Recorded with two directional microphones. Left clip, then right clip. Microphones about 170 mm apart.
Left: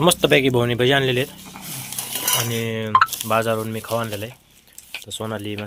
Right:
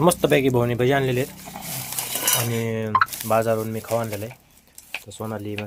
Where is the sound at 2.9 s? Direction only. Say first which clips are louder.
Left 3 dB; centre (ahead or behind).